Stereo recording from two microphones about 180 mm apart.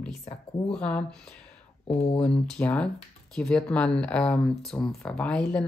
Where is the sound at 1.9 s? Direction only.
35° left (ahead or behind).